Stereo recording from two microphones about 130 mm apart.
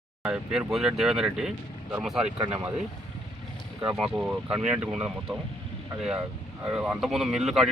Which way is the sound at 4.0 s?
5° right (ahead or behind).